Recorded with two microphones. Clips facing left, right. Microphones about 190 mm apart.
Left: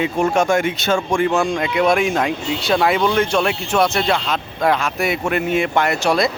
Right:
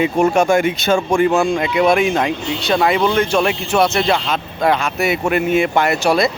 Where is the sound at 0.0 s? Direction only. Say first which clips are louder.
Right 3 dB; 10° right (ahead or behind).